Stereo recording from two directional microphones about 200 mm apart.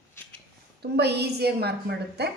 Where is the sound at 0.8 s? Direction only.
55° right (ahead or behind).